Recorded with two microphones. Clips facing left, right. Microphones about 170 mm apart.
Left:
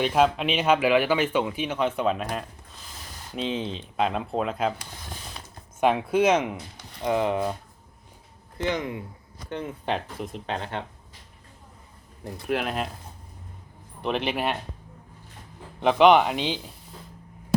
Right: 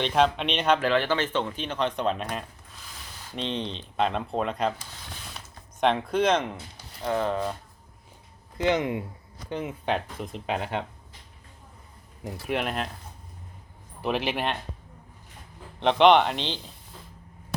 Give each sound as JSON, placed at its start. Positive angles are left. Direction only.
{"t": 0.0, "sound": "speech", "side_deg": 5}
{"t": 5.8, "sound": "speech", "side_deg": 10}
{"t": 8.5, "sound": "speech", "side_deg": -20}
{"t": 9.5, "sound": "speech", "side_deg": -5}
{"t": 12.5, "sound": "speech", "side_deg": 0}
{"t": 14.0, "sound": "speech", "side_deg": 0}
{"t": 15.8, "sound": "speech", "side_deg": 5}